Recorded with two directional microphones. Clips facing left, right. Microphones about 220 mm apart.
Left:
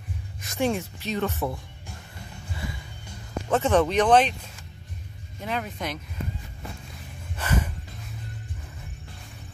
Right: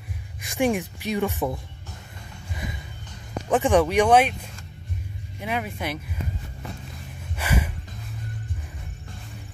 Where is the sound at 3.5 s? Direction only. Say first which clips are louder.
Right 2 dB; 15° right (ahead or behind).